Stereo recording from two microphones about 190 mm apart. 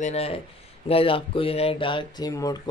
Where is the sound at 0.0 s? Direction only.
35° left (ahead or behind).